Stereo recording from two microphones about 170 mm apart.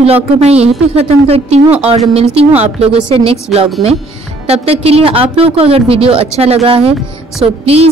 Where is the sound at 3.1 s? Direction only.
35° right (ahead or behind).